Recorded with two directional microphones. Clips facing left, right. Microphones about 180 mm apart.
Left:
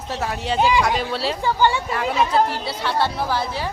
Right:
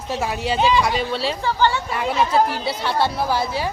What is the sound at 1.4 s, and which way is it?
Speech, 10° left (ahead or behind).